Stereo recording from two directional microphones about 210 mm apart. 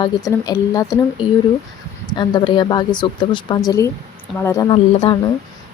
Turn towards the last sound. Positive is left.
turn(degrees=20)  # may be behind; listen again after turning